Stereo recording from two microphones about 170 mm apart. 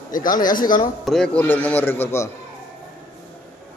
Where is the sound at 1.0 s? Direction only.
Centre (ahead or behind).